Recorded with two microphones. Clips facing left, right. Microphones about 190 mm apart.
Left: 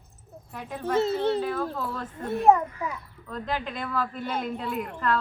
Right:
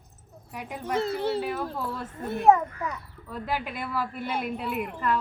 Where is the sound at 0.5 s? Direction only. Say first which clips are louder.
Left 2 dB; 10° right (ahead or behind).